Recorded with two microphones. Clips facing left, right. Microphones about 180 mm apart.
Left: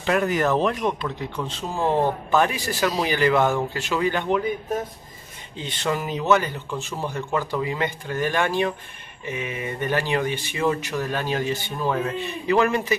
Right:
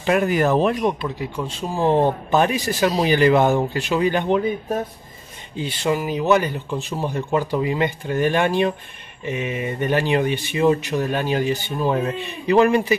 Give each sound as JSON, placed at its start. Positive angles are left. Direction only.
{"t": 0.0, "sound": "speech", "side_deg": -15}
{"t": 5.6, "sound": "speech", "side_deg": -10}